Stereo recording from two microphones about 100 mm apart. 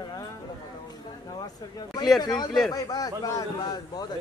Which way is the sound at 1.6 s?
40° left (ahead or behind).